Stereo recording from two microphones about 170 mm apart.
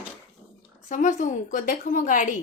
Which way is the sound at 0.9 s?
45° left (ahead or behind).